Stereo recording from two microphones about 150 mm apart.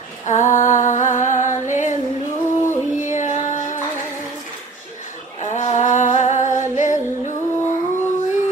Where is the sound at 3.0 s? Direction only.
55° left (ahead or behind).